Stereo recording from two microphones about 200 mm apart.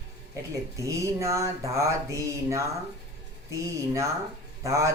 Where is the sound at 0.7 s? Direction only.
15° right (ahead or behind).